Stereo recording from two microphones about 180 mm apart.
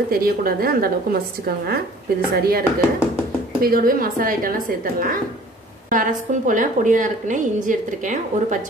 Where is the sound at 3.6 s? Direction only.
55° right (ahead or behind).